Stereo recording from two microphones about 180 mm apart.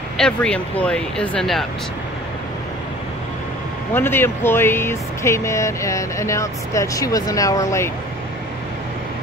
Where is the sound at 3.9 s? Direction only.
10° left (ahead or behind).